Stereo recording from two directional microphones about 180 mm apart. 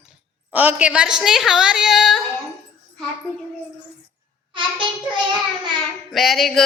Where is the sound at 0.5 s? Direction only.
10° right (ahead or behind).